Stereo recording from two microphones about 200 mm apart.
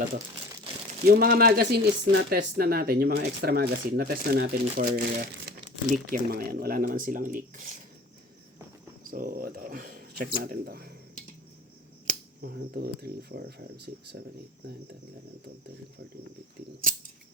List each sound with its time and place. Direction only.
1.0 s speech: 50° right (ahead or behind)
5.9 s speech: 40° right (ahead or behind)
9.0 s speech: 45° right (ahead or behind)
12.4 s speech: 50° right (ahead or behind)